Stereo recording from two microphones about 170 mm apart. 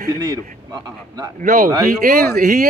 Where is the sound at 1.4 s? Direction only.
50° right (ahead or behind).